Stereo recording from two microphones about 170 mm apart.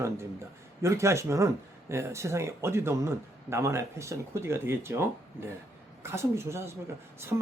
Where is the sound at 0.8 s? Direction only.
15° right (ahead or behind).